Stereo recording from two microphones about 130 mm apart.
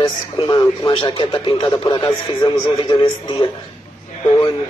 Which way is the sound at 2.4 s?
40° left (ahead or behind).